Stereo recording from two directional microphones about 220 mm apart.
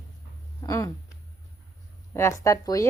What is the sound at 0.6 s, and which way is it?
Speech, 15° left (ahead or behind).